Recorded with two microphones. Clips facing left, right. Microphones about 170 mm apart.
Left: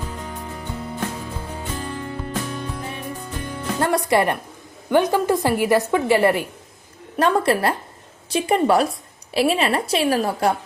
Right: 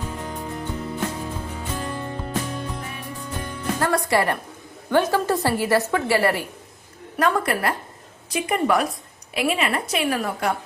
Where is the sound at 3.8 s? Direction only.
20° left (ahead or behind).